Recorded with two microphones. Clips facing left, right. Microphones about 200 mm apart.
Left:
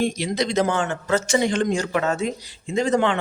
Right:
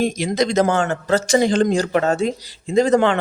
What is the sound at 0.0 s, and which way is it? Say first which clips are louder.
Speech: right 4 dB; 45° right (ahead or behind).